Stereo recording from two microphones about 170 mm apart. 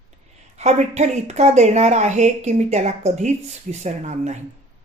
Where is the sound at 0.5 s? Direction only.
40° right (ahead or behind).